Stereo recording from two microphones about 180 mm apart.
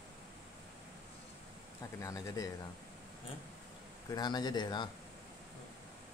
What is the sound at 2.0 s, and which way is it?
Speech, 15° left (ahead or behind).